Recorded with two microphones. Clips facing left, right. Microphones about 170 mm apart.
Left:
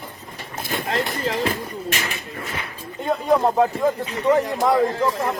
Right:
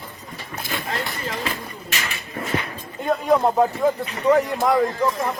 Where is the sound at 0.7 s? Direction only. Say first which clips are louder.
Left 4 dB; 50° left (ahead or behind).